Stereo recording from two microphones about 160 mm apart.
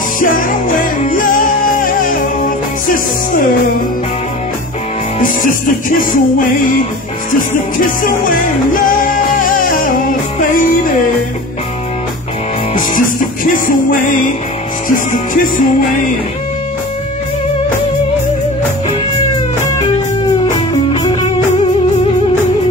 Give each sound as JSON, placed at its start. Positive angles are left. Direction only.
{"t": 0.2, "sound": "music", "side_deg": 55}
{"t": 5.2, "sound": "music", "side_deg": 55}
{"t": 12.7, "sound": "music", "side_deg": 55}
{"t": 20.9, "sound": "music", "side_deg": 25}